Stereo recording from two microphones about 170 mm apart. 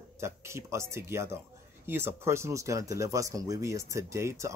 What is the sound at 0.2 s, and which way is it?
Speech, 15° right (ahead or behind).